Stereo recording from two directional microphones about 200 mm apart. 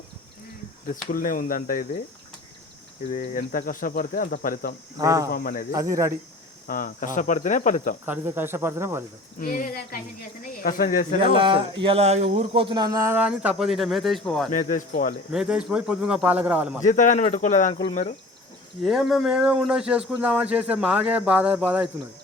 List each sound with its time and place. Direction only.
1.1 s speech: 45° left (ahead or behind)
3.1 s speech: 45° left (ahead or behind)
4.9 s speech: 15° right (ahead or behind)
5.3 s speech: 45° left (ahead or behind)
5.7 s speech: 15° right (ahead or behind)
6.7 s cricket: 45° left (ahead or behind)
8.0 s speech: 10° right (ahead or behind)
9.4 s speech: 45° left (ahead or behind)
11.2 s speech: 25° right (ahead or behind); by 14.5 s centre (ahead or behind)
14.5 s cricket: 40° left (ahead or behind)
15.3 s speech: 5° right (ahead or behind)
16.8 s cricket: 40° left (ahead or behind)
17.7 s speech: 30° left (ahead or behind)
18.8 s speech: centre (ahead or behind)